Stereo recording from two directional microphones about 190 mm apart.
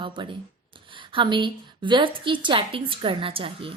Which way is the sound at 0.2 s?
25° right (ahead or behind).